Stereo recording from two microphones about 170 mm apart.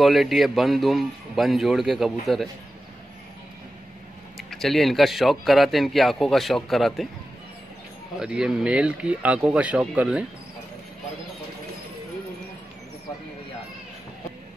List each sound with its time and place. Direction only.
0.0 s speech: centre (ahead or behind)
4.4 s speech: centre (ahead or behind)
8.2 s a man's voice: 5° right (ahead or behind)